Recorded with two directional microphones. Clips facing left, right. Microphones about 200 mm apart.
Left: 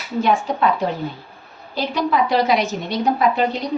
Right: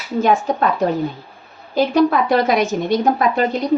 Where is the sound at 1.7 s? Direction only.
50° right (ahead or behind).